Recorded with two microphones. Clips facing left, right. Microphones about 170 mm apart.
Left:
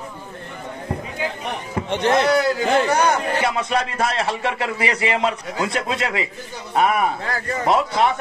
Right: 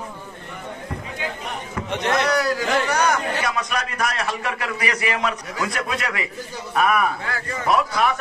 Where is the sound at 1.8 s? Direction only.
30° left (ahead or behind).